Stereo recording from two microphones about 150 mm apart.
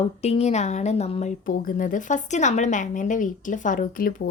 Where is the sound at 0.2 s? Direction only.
45° left (ahead or behind).